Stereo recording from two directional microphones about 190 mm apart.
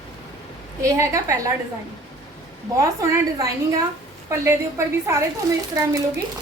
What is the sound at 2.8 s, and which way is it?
A woman's voice, 15° right (ahead or behind).